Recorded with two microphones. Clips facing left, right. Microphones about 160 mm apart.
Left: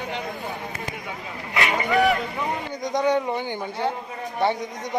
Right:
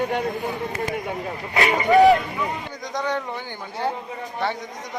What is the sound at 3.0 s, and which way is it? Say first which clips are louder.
Speech: left 5 dB; 15° left (ahead or behind).